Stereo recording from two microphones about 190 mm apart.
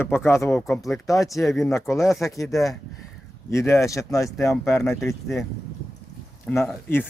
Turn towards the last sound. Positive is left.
turn(degrees=10)  # may be behind; listen again after turning